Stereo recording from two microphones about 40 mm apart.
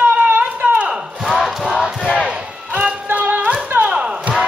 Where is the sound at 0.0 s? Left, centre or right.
Right.